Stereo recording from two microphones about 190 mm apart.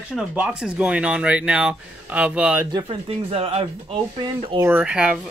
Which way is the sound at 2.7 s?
25° right (ahead or behind).